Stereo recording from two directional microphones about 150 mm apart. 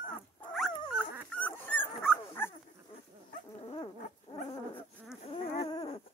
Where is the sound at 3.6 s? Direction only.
40° left (ahead or behind).